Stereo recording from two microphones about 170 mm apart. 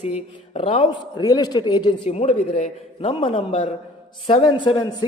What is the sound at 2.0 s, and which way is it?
Speech, 40° left (ahead or behind).